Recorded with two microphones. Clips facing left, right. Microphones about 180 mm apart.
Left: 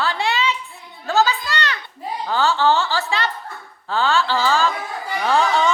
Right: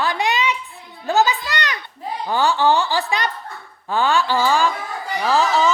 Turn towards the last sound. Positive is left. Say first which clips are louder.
# right 1 dB
turn(degrees=0)  # may be behind; listen again after turning